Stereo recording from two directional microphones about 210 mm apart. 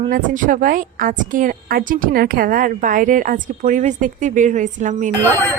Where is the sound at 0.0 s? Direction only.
40° right (ahead or behind).